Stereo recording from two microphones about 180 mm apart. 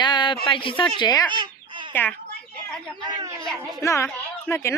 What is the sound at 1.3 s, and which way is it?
Chicken, 25° right (ahead or behind).